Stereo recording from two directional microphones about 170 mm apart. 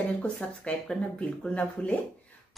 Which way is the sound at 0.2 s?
5° left (ahead or behind).